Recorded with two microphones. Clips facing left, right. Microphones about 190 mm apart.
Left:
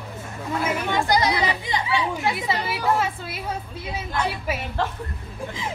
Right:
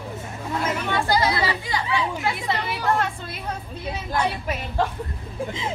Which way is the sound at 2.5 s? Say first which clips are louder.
Right 1 dB; 5° left (ahead or behind).